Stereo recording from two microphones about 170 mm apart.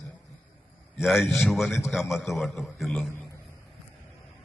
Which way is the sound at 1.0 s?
Centre (ahead or behind).